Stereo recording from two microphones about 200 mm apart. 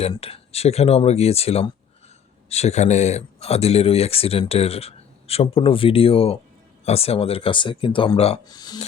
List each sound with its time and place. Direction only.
0.0 s speech: 30° left (ahead or behind)